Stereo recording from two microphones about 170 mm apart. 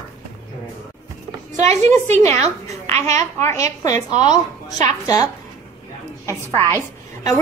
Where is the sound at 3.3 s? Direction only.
15° left (ahead or behind).